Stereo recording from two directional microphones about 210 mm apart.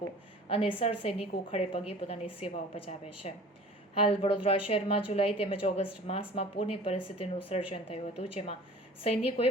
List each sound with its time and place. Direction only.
0.4 s a woman's voice: 25° left (ahead or behind)